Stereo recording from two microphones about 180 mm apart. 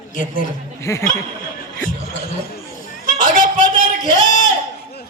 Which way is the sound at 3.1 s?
45° left (ahead or behind).